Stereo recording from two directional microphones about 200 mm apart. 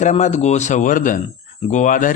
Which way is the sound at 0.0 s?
35° left (ahead or behind).